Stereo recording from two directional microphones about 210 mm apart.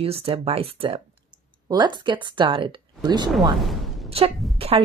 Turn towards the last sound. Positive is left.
turn(degrees=-25)  # may be behind; listen again after turning